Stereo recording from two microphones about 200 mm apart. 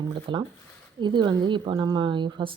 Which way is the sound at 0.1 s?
25° right (ahead or behind).